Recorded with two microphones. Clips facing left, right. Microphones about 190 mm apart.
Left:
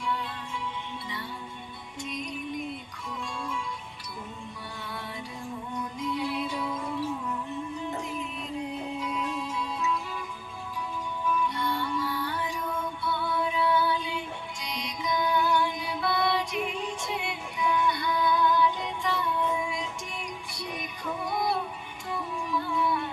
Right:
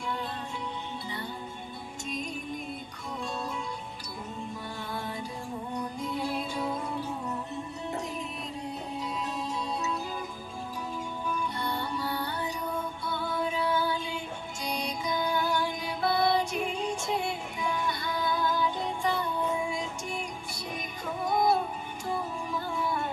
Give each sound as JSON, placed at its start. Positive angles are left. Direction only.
{"t": 0.0, "sound": "music", "side_deg": -45}
{"t": 3.1, "sound": "music", "side_deg": -40}
{"t": 4.8, "sound": "music", "side_deg": -45}
{"t": 9.0, "sound": "music", "side_deg": -35}
{"t": 11.3, "sound": "music", "side_deg": -40}
{"t": 21.2, "sound": "music", "side_deg": -40}